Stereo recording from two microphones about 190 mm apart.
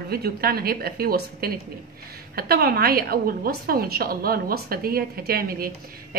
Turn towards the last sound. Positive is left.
turn(degrees=-50)  # may be behind; listen again after turning